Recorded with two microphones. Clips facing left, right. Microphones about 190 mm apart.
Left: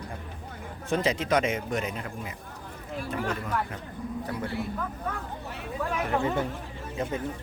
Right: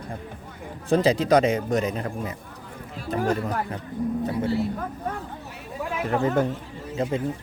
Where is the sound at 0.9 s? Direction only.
35° right (ahead or behind).